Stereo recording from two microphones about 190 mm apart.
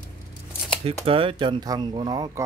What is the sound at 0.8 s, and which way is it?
Speech, 30° right (ahead or behind).